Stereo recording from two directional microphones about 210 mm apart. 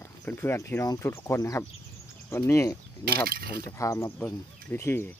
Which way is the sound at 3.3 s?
45° right (ahead or behind).